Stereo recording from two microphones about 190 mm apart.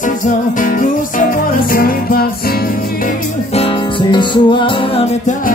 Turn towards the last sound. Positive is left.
turn(degrees=30)  # may be behind; listen again after turning